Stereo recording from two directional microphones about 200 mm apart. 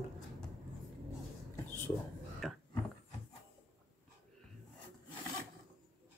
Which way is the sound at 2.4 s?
Centre (ahead or behind).